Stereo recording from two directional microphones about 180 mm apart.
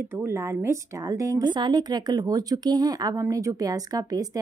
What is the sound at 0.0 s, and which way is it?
A woman's voice, 15° right (ahead or behind).